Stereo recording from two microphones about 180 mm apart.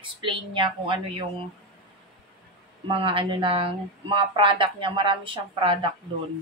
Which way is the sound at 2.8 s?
30° right (ahead or behind).